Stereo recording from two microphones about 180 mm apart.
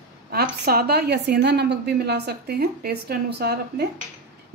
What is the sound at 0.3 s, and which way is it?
A woman's voice, 60° right (ahead or behind).